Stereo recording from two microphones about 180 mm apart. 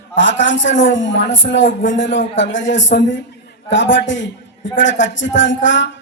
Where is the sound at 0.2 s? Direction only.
90° left.